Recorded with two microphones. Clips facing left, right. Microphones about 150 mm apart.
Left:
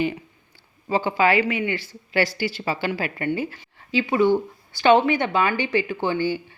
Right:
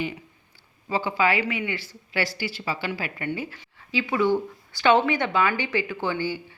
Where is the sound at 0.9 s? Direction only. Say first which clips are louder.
Left 4 dB; 50° left (ahead or behind).